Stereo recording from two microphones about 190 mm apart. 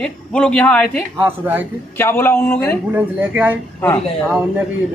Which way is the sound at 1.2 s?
10° right (ahead or behind).